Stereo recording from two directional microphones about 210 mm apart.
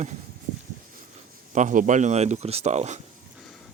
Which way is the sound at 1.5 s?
35° right (ahead or behind).